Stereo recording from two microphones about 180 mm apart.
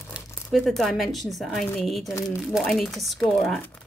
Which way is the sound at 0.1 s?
Centre (ahead or behind).